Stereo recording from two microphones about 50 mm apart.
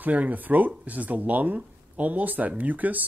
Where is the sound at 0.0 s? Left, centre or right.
Right.